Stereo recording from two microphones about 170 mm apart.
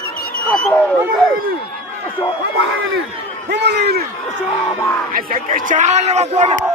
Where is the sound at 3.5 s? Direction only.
85° right.